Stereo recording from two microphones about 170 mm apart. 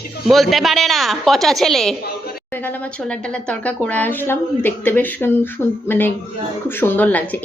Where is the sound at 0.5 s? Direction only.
Centre (ahead or behind).